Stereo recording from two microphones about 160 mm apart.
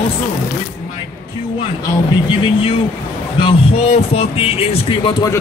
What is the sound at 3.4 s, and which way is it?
Music, 35° left (ahead or behind).